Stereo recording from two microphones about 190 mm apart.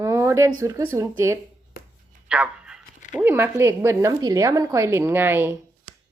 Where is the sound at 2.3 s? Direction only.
5° right (ahead or behind).